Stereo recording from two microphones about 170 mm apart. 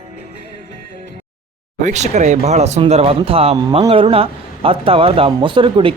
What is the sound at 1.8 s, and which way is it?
A man's voice, 45° right (ahead or behind).